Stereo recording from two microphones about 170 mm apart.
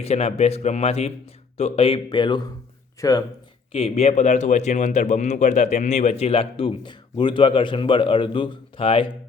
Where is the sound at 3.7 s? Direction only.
35° left (ahead or behind).